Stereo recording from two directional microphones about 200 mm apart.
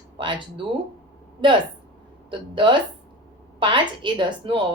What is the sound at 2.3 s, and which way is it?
A woman's voice, 25° right (ahead or behind).